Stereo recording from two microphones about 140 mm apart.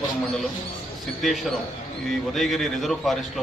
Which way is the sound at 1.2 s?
Centre (ahead or behind).